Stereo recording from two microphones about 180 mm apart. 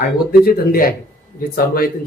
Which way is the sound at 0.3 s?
55° left (ahead or behind).